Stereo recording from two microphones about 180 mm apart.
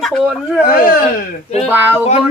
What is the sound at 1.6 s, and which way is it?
Speech, 10° right (ahead or behind).